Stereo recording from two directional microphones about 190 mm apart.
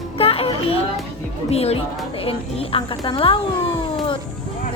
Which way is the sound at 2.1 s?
30° left (ahead or behind).